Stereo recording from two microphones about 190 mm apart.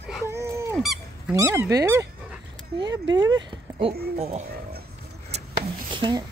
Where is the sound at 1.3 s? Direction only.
15° right (ahead or behind).